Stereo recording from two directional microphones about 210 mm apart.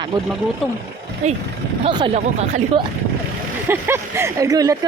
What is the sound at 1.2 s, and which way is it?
Speech, 35° right (ahead or behind).